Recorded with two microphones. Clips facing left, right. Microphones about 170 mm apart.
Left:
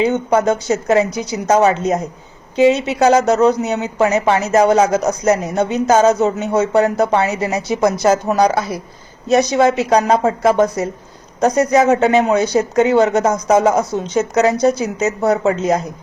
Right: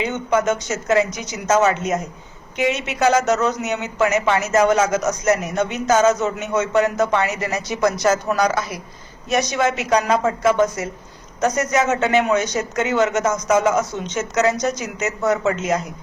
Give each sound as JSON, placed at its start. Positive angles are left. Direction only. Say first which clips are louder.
{"t": 0.1, "sound": "a woman's voice", "louder": "left 4 dB", "side_deg": 35}